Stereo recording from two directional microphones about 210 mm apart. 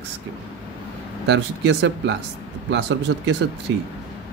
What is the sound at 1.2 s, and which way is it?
Speech, 55° right (ahead or behind).